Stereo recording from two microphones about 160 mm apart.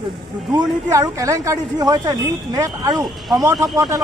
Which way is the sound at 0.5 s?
20° right (ahead or behind).